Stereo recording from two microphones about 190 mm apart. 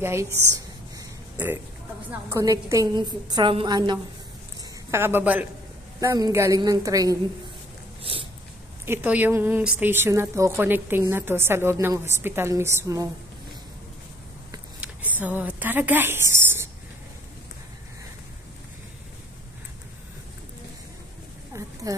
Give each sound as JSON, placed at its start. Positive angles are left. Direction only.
{"t": 0.0, "sound": "speech", "side_deg": -15}
{"t": 0.9, "sound": "a sound", "side_deg": -10}
{"t": 2.0, "sound": "a woman's voice", "side_deg": -10}
{"t": 4.9, "sound": "speech", "side_deg": -10}
{"t": 8.0, "sound": "dog", "side_deg": -30}
{"t": 8.8, "sound": "speech", "side_deg": -10}
{"t": 14.8, "sound": "speech", "side_deg": -10}
{"t": 21.5, "sound": "a sound", "side_deg": -15}